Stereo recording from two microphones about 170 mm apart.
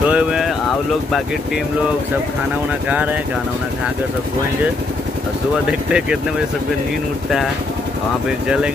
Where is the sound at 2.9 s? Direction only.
10° right (ahead or behind).